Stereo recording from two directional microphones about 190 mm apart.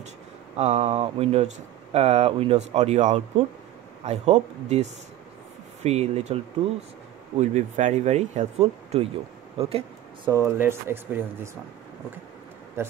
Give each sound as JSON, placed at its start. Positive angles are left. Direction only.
{"t": 0.6, "sound": "speech", "side_deg": -35}
{"t": 5.9, "sound": "speech", "side_deg": -35}
{"t": 9.6, "sound": "a sound", "side_deg": -30}
{"t": 10.3, "sound": "speech", "side_deg": -15}
{"t": 12.8, "sound": "speech", "side_deg": -15}